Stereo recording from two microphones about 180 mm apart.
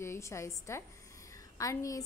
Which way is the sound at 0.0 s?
15° left (ahead or behind).